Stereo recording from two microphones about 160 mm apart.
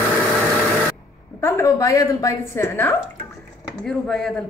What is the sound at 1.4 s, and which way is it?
A woman's voice, 15° left (ahead or behind).